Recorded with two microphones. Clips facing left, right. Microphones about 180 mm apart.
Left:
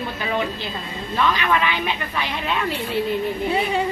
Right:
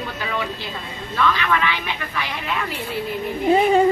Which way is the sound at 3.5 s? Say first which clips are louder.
Right 9 dB; 45° right (ahead or behind).